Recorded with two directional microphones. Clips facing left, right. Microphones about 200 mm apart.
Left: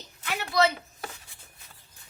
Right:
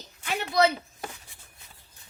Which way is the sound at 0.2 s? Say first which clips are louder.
Right 2 dB; 15° right (ahead or behind).